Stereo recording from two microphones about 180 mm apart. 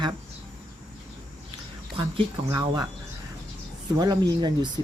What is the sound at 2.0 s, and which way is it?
Speech, 25° right (ahead or behind).